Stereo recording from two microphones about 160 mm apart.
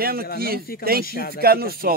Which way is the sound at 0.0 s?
70° right (ahead or behind).